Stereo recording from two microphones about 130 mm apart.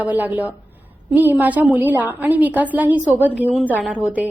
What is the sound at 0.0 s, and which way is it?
A woman's voice, 10° right (ahead or behind).